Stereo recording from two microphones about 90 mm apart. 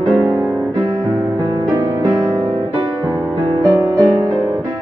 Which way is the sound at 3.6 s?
40° right (ahead or behind).